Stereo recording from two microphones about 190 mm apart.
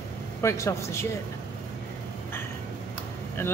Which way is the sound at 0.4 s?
15° left (ahead or behind).